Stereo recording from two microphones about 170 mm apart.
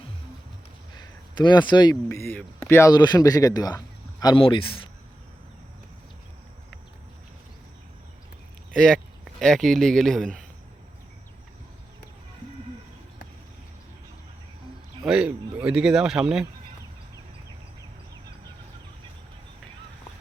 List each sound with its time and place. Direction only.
1.4 s speech: 25° left (ahead or behind)
8.7 s speech: centre (ahead or behind)
15.0 s speech: 5° right (ahead or behind)